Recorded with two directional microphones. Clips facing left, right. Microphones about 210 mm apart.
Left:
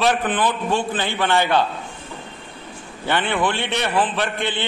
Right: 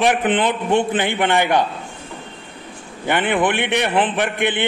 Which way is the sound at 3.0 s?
15° right (ahead or behind).